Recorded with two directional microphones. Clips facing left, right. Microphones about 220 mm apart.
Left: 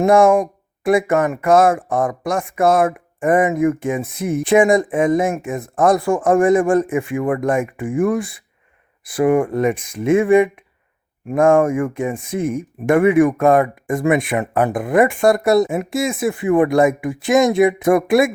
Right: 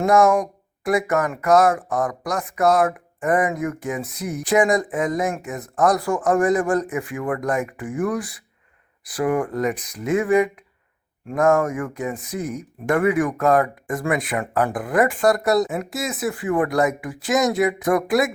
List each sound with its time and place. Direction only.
0.0 s speech: 30° left (ahead or behind)